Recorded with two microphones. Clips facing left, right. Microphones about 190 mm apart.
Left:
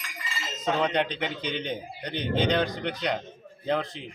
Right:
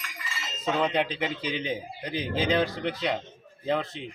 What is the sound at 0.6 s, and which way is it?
A man's voice, 5° right (ahead or behind).